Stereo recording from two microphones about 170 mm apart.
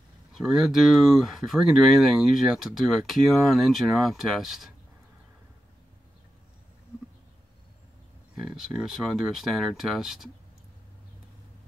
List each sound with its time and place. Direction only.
0.3 s speech: centre (ahead or behind)
8.4 s speech: centre (ahead or behind)